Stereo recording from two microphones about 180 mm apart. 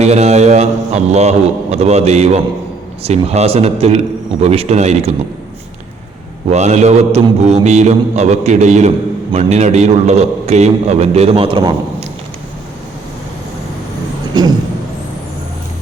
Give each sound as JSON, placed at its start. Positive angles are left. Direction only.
{"t": 0.0, "sound": "a man's voice", "side_deg": -40}
{"t": 6.5, "sound": "a man's voice", "side_deg": -40}